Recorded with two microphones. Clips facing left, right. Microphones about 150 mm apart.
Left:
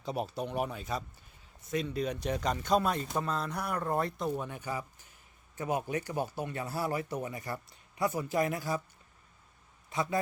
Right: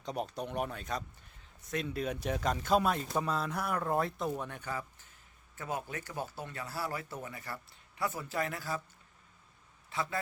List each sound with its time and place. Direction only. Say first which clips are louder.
0.0 s speech: left 2 dB; 5° left (ahead or behind)
9.9 s speech: left 4 dB; 15° left (ahead or behind)